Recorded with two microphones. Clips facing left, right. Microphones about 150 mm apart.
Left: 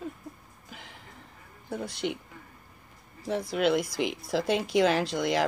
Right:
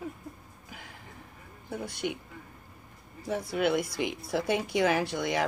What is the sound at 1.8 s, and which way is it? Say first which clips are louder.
Speech: left 1 dB; 65° left (ahead or behind).